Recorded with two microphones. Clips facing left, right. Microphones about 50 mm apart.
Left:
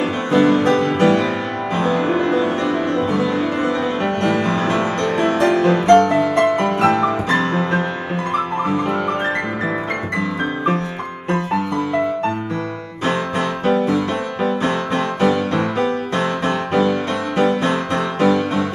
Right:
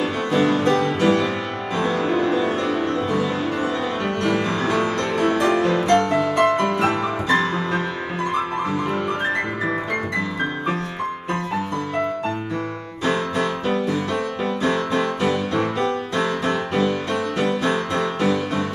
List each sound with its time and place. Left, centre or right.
0.3 s music: left
4.2 s music: left
13.0 s music: left